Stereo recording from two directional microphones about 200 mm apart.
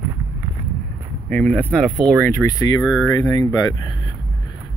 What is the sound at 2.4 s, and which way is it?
Speech, 15° left (ahead or behind).